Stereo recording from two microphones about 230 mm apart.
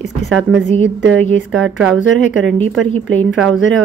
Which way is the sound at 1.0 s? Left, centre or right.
Right.